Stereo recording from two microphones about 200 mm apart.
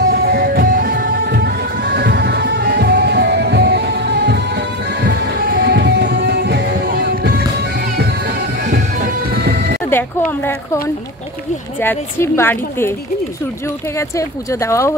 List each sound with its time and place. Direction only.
0.1 s music: 50° right (ahead or behind)
8.6 s music: 45° right (ahead or behind)
9.8 s a sound: 10° left (ahead or behind)
11.8 s a woman's voice: 10° left (ahead or behind)
13.9 s a woman's voice: 15° left (ahead or behind)